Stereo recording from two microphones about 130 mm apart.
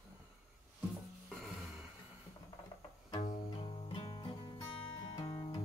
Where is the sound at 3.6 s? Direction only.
45° left (ahead or behind).